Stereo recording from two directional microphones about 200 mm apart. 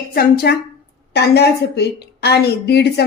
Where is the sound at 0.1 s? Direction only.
50° left (ahead or behind).